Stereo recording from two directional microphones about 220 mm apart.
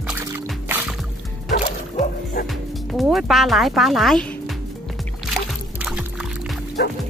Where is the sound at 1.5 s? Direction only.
35° left (ahead or behind).